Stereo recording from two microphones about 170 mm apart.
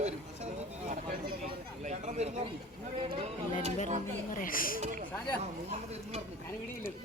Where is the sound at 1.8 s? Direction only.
45° right (ahead or behind).